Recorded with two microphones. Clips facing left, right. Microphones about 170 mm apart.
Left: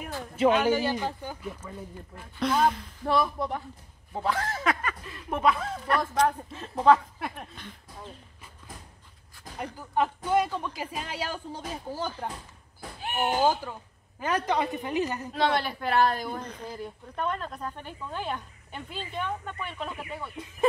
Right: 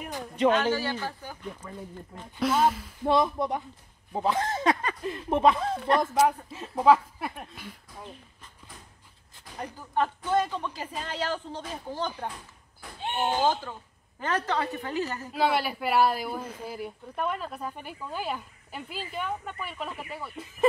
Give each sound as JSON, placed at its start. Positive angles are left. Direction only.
{"t": 0.2, "sound": "speech", "side_deg": 10}
{"t": 1.4, "sound": "speech", "side_deg": 5}
{"t": 3.0, "sound": "speech", "side_deg": -20}
{"t": 6.1, "sound": "speech", "side_deg": -5}
{"t": 9.8, "sound": "speech", "side_deg": 10}
{"t": 13.0, "sound": "a sound", "side_deg": -25}
{"t": 13.4, "sound": "speech", "side_deg": 10}
{"t": 15.3, "sound": "speech", "side_deg": -10}